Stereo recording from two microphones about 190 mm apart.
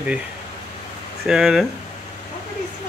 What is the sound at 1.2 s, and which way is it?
Speech, centre (ahead or behind).